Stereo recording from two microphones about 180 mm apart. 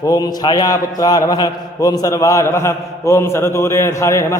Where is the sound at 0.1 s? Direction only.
20° left (ahead or behind).